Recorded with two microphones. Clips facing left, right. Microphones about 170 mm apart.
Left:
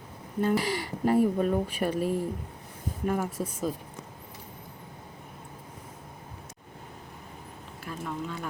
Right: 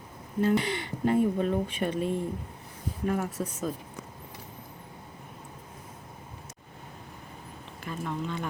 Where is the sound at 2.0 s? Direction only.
5° left (ahead or behind).